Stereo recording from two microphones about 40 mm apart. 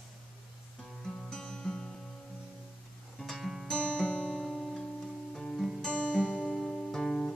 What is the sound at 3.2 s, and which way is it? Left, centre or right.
Music, centre.